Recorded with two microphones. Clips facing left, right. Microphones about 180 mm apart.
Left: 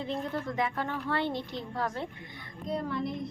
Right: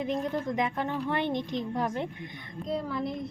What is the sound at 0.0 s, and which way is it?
A woman's voice, 15° right (ahead or behind).